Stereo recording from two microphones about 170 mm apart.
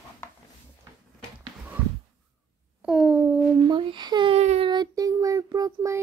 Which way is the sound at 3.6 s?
30° right (ahead or behind).